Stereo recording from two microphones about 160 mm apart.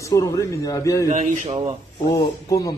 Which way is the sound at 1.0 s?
45° right (ahead or behind).